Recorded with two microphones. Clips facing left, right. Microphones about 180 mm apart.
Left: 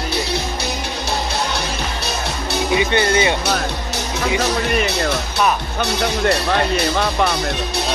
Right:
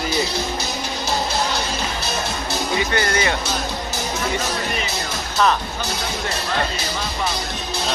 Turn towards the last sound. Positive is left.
turn(degrees=65)  # may be behind; listen again after turning